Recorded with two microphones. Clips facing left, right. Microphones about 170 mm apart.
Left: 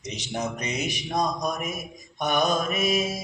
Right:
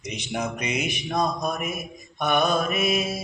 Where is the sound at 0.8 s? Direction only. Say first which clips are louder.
Even; 35° left (ahead or behind).